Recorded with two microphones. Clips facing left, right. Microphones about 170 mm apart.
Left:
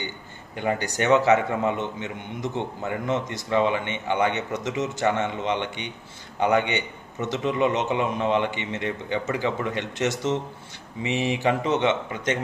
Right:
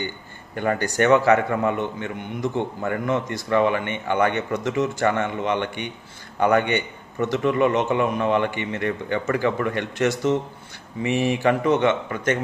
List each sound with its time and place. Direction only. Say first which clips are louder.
0.6 s a man's voice: right 4 dB; 15° left (ahead or behind)